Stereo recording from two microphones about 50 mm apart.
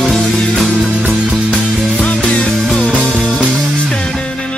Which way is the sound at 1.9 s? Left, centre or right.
Left.